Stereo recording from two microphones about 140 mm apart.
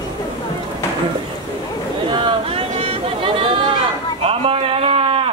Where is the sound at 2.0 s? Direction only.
40° right (ahead or behind).